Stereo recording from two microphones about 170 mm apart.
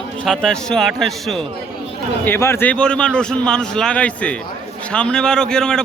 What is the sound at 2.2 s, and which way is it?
A man's voice, 15° left (ahead or behind).